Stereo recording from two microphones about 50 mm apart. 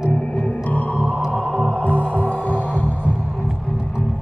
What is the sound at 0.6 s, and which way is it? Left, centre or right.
Music, left.